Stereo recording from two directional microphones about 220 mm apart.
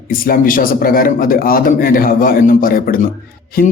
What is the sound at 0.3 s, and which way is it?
A man's voice, 40° left (ahead or behind).